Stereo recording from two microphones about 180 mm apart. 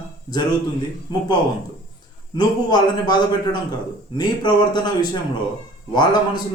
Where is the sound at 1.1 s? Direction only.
25° left (ahead or behind).